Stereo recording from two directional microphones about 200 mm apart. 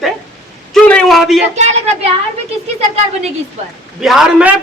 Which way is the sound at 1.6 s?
35° right (ahead or behind).